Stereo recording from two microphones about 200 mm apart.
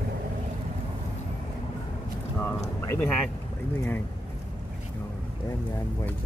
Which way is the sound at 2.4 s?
15° left (ahead or behind).